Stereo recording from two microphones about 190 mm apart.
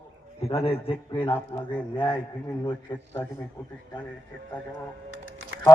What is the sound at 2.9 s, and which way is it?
Speech, 20° left (ahead or behind).